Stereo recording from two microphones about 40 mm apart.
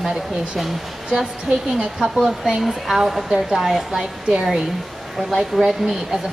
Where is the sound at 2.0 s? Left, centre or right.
Centre.